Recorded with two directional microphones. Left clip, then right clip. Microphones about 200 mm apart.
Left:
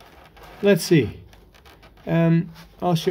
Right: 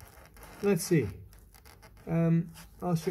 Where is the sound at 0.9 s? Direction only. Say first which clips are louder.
Left 10 dB; 15° left (ahead or behind).